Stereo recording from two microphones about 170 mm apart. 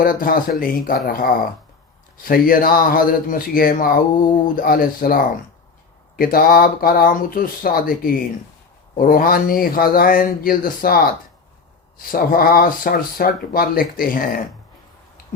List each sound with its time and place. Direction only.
0.0 s speech: 55° left (ahead or behind)
12.1 s speech: 60° left (ahead or behind)